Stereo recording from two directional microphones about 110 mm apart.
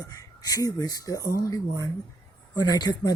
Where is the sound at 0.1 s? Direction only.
35° left (ahead or behind).